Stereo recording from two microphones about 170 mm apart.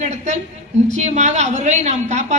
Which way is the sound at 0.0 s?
45° right (ahead or behind).